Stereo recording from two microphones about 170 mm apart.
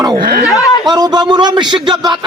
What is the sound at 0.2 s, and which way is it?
Speech, 60° right (ahead or behind).